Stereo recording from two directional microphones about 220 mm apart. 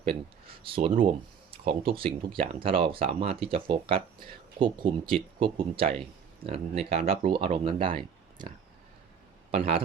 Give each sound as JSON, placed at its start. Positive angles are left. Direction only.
{"t": 0.1, "sound": "speech", "side_deg": -25}
{"t": 9.5, "sound": "speech", "side_deg": -25}